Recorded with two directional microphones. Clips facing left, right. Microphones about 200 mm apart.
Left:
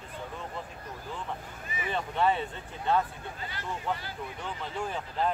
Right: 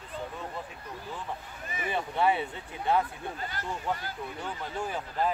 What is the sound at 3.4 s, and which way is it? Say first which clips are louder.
Speech: left 1 dB; 45° right (ahead or behind).